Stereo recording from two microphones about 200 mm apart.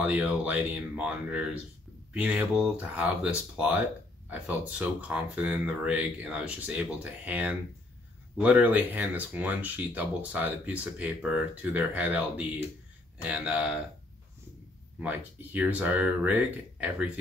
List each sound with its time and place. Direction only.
0.0 s speech: 5° right (ahead or behind)
15.0 s speech: 10° right (ahead or behind)